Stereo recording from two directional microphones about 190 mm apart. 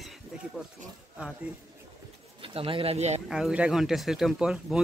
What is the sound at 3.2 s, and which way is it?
Speech, 5° right (ahead or behind).